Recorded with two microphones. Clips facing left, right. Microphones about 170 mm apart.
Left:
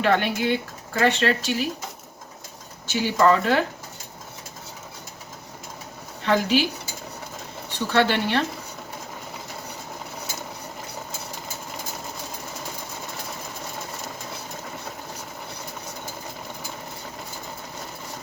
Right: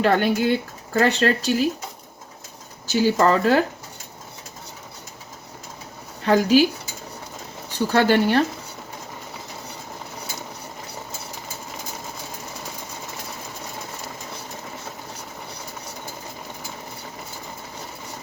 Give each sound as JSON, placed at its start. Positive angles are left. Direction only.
{"t": 0.0, "sound": "speech", "side_deg": -35}
{"t": 2.8, "sound": "speech", "side_deg": -40}
{"t": 6.2, "sound": "speech", "side_deg": -40}
{"t": 7.9, "sound": "speech", "side_deg": -40}